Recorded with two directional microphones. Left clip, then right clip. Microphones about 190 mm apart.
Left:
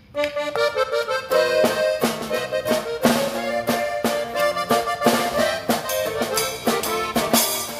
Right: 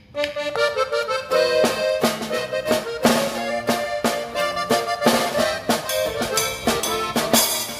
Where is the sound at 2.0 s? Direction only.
20° right (ahead or behind).